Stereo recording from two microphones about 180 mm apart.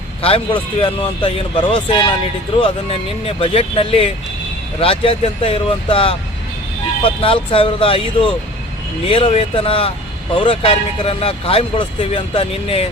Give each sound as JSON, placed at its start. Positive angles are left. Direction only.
{"t": 0.2, "sound": "speech", "side_deg": 30}